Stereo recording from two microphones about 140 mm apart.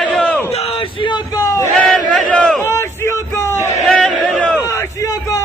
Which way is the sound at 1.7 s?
5° left (ahead or behind).